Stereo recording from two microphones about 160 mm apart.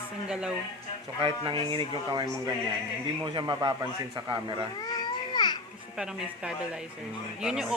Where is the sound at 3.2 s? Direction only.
30° right (ahead or behind).